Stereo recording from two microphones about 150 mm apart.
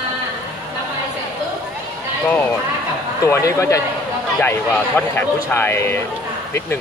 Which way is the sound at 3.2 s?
20° left (ahead or behind).